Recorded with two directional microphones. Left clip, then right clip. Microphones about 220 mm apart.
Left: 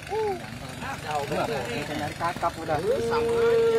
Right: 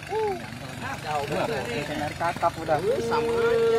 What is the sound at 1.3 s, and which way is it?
Speech, 15° left (ahead or behind).